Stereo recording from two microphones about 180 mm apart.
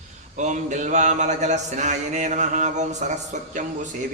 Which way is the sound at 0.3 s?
40° right (ahead or behind).